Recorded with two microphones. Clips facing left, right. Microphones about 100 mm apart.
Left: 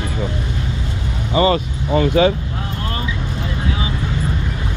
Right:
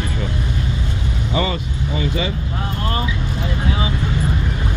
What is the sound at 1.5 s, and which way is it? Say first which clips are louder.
Speech: left 7 dB; 55° left (ahead or behind).